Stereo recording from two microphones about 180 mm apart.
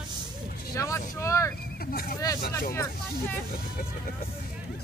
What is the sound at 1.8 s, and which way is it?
Speech, 55° left (ahead or behind).